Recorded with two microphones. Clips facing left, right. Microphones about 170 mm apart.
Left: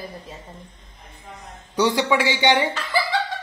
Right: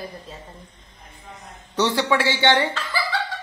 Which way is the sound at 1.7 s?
15° left (ahead or behind).